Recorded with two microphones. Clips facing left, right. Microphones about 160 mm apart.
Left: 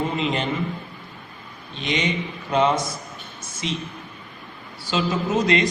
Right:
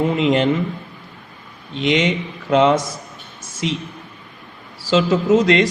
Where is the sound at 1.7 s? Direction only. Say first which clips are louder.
Right 7 dB; 90° right.